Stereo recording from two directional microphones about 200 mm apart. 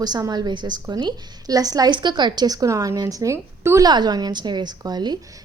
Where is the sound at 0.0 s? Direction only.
20° right (ahead or behind).